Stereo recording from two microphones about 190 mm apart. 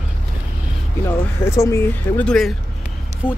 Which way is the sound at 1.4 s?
15° left (ahead or behind).